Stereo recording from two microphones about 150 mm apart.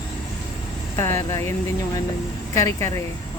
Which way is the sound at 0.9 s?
15° left (ahead or behind).